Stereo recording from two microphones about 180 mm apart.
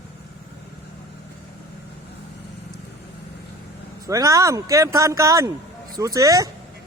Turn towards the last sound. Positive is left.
turn(degrees=-20)  # may be behind; listen again after turning